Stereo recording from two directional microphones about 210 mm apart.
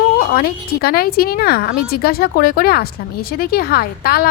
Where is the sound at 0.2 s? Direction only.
45° left (ahead or behind).